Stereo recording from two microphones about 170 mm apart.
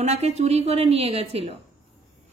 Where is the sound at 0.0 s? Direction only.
40° right (ahead or behind).